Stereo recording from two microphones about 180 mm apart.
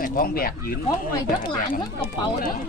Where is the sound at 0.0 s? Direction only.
55° left (ahead or behind).